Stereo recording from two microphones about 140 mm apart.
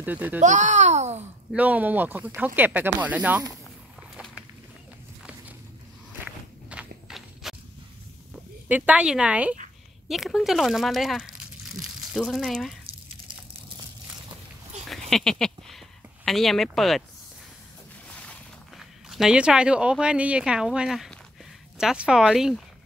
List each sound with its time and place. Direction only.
0.0 s speech: 10° right (ahead or behind)
0.4 s a child's voice: 60° right (ahead or behind)
1.5 s speech: 10° right (ahead or behind)
6.2 s walk: 10° right (ahead or behind)
8.6 s speech: 10° right (ahead or behind)
14.9 s a sound: centre (ahead or behind)
16.3 s speech: centre (ahead or behind)
18.1 s a sound: 10° left (ahead or behind)
18.8 s speech: centre (ahead or behind)